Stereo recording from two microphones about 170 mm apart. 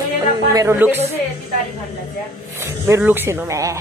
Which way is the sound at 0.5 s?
15° right (ahead or behind).